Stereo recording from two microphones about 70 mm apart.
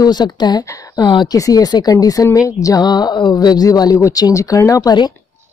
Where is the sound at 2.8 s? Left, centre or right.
Left.